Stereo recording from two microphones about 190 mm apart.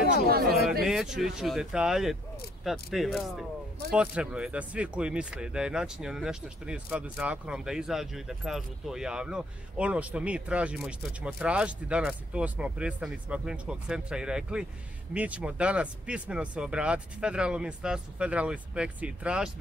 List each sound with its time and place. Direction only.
0.3 s speech: 55° right (ahead or behind)
0.8 s speech: 5° right (ahead or behind)